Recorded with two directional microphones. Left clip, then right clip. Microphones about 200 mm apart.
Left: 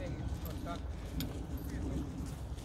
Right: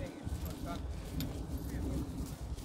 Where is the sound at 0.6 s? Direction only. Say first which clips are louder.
Even; 35° left (ahead or behind).